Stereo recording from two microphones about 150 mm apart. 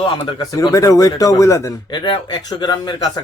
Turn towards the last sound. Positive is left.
turn(degrees=25)  # may be behind; listen again after turning